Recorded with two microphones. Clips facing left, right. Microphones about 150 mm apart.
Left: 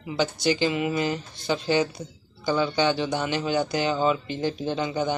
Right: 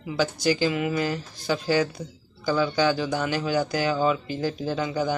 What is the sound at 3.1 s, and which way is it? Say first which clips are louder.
Speech: even; 5° right (ahead or behind).